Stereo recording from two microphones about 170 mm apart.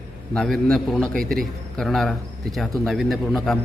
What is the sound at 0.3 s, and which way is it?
A man's voice, 5° left (ahead or behind).